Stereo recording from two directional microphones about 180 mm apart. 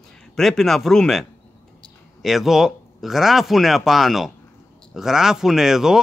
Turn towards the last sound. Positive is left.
turn(degrees=0)  # may be behind; listen again after turning